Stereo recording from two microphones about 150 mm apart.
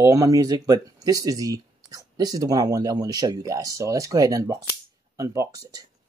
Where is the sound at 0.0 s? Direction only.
20° right (ahead or behind).